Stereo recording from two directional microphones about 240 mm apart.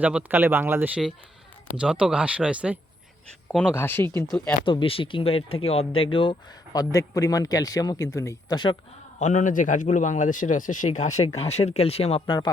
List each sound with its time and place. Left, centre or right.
0.0 s a man's voice: centre
4.6 s a man's voice: left
9.1 s a man's voice: left